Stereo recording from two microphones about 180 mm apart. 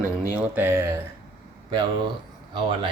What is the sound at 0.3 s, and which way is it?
Speech, 10° right (ahead or behind).